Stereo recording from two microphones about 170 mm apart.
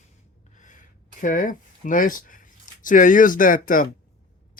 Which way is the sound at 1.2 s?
50° left (ahead or behind).